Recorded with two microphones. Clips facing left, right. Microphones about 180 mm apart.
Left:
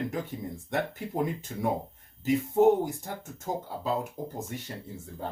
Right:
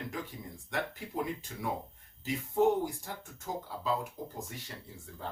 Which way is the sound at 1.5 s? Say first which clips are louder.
Left 8 dB; 35° left (ahead or behind).